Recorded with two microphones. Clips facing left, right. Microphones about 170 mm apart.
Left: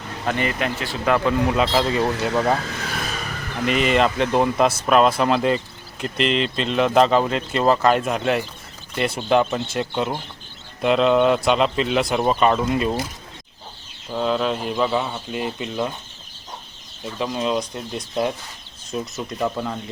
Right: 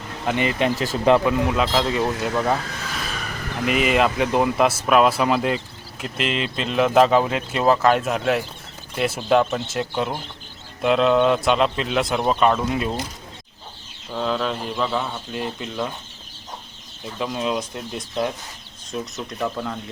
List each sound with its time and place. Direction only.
0.3 s speech: 15° right (ahead or behind)
0.6 s speech: 35° right (ahead or behind)
1.2 s speech: 5° right (ahead or behind)
3.7 s speech: 5° right (ahead or behind)
14.1 s speech: 5° left (ahead or behind)
17.2 s speech: centre (ahead or behind)